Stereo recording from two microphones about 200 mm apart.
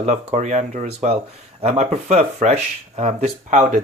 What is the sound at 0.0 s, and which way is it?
Speech, 35° right (ahead or behind).